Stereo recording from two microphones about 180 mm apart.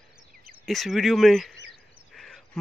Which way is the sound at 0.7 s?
Centre (ahead or behind).